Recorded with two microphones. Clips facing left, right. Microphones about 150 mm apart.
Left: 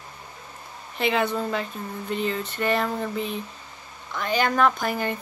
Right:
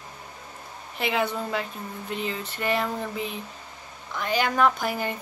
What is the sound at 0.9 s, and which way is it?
Speech, 5° right (ahead or behind).